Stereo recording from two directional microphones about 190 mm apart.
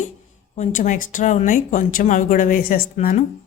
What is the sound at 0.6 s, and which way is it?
A woman's voice, 40° left (ahead or behind).